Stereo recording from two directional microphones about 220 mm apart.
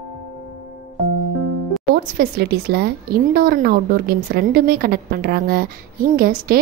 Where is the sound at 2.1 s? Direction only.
45° right (ahead or behind).